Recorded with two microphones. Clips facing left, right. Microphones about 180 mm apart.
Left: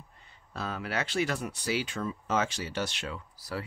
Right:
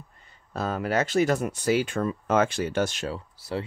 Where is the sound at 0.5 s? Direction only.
45° right (ahead or behind).